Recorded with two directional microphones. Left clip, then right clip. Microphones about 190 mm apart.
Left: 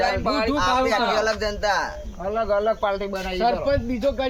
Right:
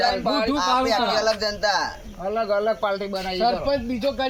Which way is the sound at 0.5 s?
15° left (ahead or behind).